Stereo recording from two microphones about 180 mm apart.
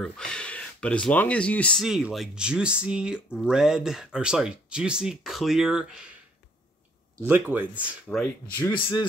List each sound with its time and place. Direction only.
0.0 s speech: 5° left (ahead or behind)
7.2 s speech: 10° right (ahead or behind)
8.1 s speech: 5° left (ahead or behind)
8.7 s speech: 30° left (ahead or behind)